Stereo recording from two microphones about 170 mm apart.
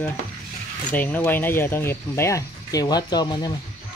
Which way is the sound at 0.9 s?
10° left (ahead or behind).